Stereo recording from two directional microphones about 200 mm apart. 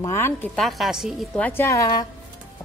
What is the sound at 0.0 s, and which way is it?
A woman's voice, 10° left (ahead or behind).